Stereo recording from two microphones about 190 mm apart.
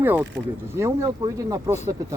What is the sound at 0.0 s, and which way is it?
Speech, 10° right (ahead or behind).